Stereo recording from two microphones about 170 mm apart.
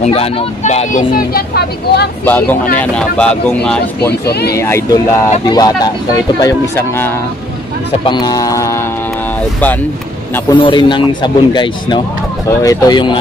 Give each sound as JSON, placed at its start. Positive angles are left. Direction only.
{"t": 0.0, "sound": "speech", "side_deg": 35}
{"t": 2.2, "sound": "speech", "side_deg": 10}
{"t": 4.1, "sound": "speech", "side_deg": 70}
{"t": 4.6, "sound": "speech", "side_deg": 15}
{"t": 8.0, "sound": "speech", "side_deg": 25}
{"t": 10.5, "sound": "speech", "side_deg": 30}